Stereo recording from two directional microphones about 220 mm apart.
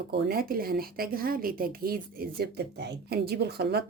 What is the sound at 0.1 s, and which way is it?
A woman's voice, 45° right (ahead or behind).